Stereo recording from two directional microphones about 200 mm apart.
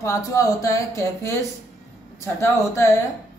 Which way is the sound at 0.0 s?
15° left (ahead or behind).